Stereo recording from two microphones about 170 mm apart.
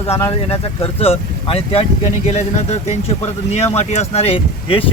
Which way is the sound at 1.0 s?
35° left (ahead or behind).